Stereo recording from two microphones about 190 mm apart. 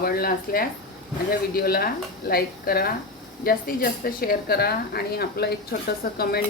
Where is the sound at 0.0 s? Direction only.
50° left (ahead or behind).